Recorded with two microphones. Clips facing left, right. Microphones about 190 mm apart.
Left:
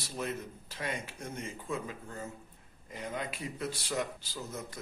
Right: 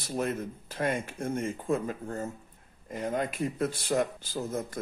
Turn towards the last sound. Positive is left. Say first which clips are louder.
# right 8 dB
turn(degrees=-50)  # may be behind; listen again after turning